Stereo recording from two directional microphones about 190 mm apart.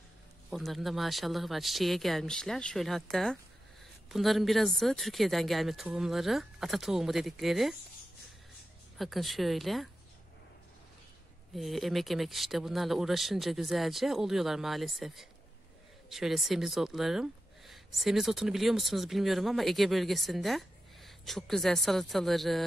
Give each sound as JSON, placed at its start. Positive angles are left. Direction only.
{"t": 0.5, "sound": "speech", "side_deg": 0}
{"t": 8.9, "sound": "speech", "side_deg": 0}
{"t": 11.5, "sound": "speech", "side_deg": 0}